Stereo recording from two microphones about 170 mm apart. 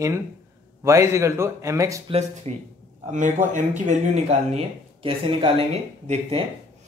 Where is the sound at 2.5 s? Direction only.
40° right (ahead or behind).